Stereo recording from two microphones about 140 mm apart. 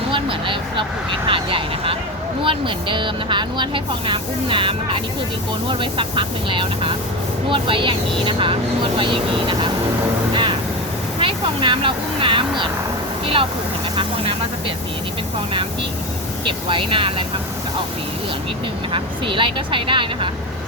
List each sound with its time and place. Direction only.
0.1 s speech: 35° right (ahead or behind)
11.2 s speech: 40° right (ahead or behind)
16.4 s speech: 35° right (ahead or behind)
18.9 s speech: 35° right (ahead or behind)